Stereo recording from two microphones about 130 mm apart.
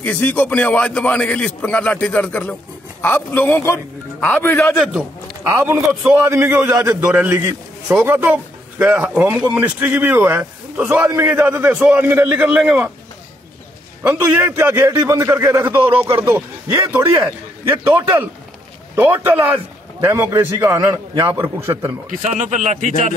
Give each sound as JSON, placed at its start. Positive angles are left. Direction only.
{"t": 0.0, "sound": "a man's voice", "side_deg": 15}
{"t": 5.5, "sound": "a man's voice", "side_deg": -20}
{"t": 14.0, "sound": "a man's voice", "side_deg": -15}
{"t": 15.8, "sound": "speech", "side_deg": -45}
{"t": 16.2, "sound": "a man's voice", "side_deg": -20}
{"t": 21.1, "sound": "a man's voice", "side_deg": -30}
{"t": 22.4, "sound": "a man's voice", "side_deg": -70}